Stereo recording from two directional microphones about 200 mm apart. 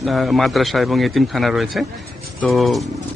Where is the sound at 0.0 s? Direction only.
Centre (ahead or behind).